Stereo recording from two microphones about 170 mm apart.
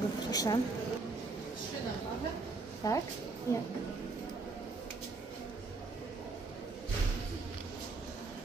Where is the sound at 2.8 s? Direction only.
20° left (ahead or behind).